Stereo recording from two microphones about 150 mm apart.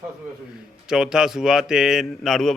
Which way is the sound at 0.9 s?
5° right (ahead or behind).